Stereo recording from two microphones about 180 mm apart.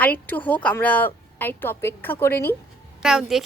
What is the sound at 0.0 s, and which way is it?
A child's voice, 10° left (ahead or behind).